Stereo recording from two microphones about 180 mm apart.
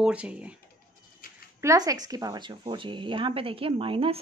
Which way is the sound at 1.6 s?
20° right (ahead or behind).